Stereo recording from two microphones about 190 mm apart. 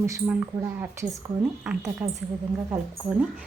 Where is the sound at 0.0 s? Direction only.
10° right (ahead or behind).